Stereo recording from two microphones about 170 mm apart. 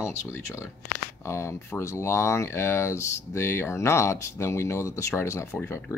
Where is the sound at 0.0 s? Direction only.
15° left (ahead or behind).